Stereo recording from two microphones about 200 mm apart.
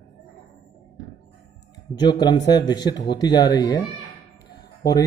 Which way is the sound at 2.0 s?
20° left (ahead or behind).